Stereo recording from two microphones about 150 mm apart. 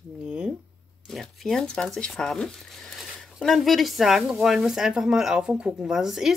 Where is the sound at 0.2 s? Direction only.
5° right (ahead or behind).